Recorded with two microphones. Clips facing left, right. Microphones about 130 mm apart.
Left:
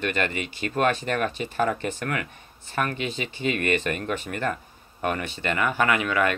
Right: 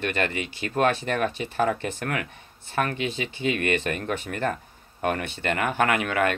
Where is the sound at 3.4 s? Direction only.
50° left (ahead or behind).